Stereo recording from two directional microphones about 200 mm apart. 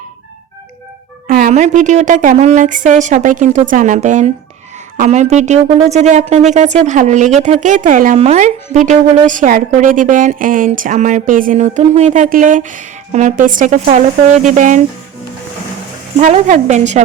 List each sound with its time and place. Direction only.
1.3 s speech: 45° right (ahead or behind)
16.1 s speech: 35° right (ahead or behind)